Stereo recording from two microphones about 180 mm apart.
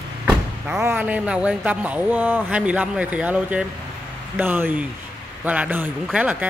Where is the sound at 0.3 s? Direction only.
5° right (ahead or behind).